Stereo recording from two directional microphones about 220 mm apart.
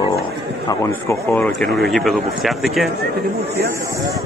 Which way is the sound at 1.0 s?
5° left (ahead or behind).